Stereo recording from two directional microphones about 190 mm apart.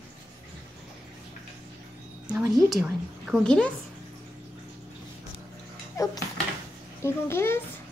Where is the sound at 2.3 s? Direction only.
Centre (ahead or behind).